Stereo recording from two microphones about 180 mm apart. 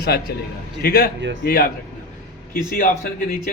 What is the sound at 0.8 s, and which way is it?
A man's voice, 65° left (ahead or behind).